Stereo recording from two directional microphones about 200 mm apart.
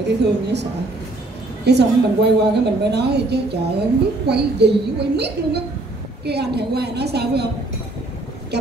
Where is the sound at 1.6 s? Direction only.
55° right (ahead or behind).